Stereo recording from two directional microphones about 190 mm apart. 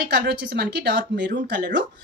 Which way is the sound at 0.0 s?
60° right (ahead or behind).